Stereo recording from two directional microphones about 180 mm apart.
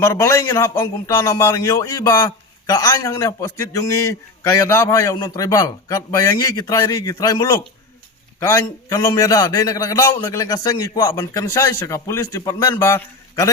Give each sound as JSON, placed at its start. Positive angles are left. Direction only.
{"t": 0.0, "sound": "a man's voice", "side_deg": 15}